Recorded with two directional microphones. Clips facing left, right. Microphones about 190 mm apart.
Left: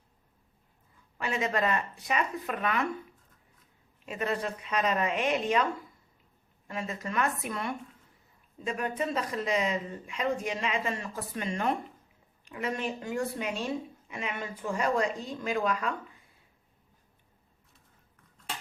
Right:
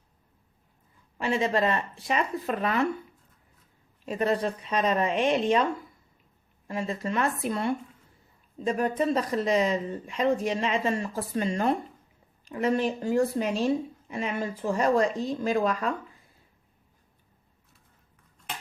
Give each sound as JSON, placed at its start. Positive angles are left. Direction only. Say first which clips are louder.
{"t": 1.2, "sound": "speech", "louder": "right 4 dB", "side_deg": -30}
{"t": 4.0, "sound": "speech", "louder": "right 6 dB", "side_deg": -35}
{"t": 6.7, "sound": "speech", "louder": "right 5 dB", "side_deg": -30}